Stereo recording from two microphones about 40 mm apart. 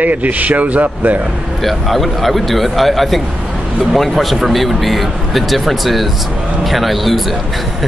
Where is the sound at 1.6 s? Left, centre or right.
Centre.